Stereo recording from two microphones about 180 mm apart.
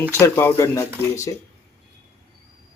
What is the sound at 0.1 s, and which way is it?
Speech, 15° left (ahead or behind).